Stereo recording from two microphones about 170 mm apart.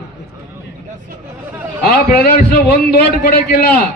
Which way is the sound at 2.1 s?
65° left (ahead or behind).